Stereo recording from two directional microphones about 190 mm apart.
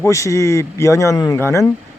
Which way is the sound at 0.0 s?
15° left (ahead or behind).